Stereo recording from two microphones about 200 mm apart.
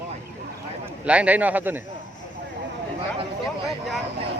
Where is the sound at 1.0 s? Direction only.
5° right (ahead or behind).